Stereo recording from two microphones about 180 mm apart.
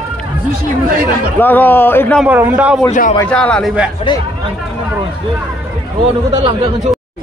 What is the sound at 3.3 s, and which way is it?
Speech, 5° left (ahead or behind).